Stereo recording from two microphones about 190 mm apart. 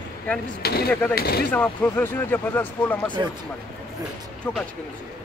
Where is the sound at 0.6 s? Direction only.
55° left (ahead or behind).